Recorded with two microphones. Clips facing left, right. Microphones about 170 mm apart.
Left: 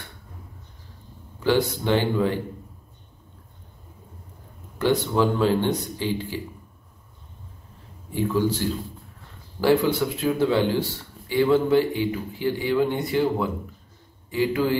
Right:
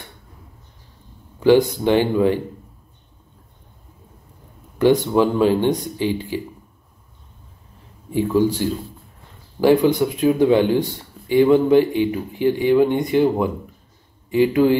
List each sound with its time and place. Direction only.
1.4 s speech: 15° right (ahead or behind)
4.7 s speech: 15° right (ahead or behind)
8.1 s speech: 15° right (ahead or behind)